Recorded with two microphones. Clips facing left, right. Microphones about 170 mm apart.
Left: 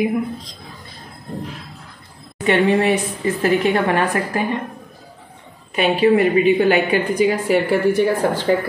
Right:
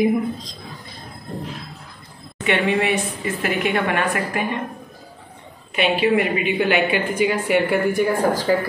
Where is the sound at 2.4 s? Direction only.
40° left (ahead or behind).